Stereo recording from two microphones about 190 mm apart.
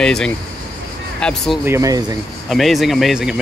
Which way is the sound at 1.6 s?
15° right (ahead or behind).